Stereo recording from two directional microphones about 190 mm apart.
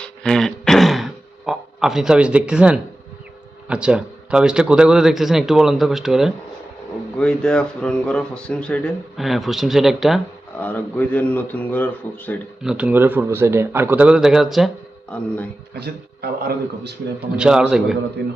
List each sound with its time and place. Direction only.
0.0 s throat clearing: 5° left (ahead or behind)
3.7 s a man's voice: 5° right (ahead or behind)
12.6 s a man's voice: 5° right (ahead or behind)
15.7 s a man's voice: 55° right (ahead or behind)
17.3 s speech: 5° right (ahead or behind)